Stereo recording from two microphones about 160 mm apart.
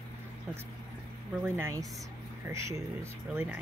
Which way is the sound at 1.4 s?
15° right (ahead or behind).